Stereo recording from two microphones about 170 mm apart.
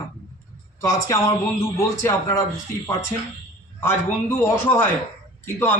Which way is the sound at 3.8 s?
15° left (ahead or behind).